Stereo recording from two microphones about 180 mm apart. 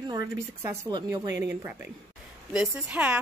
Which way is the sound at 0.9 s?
25° right (ahead or behind).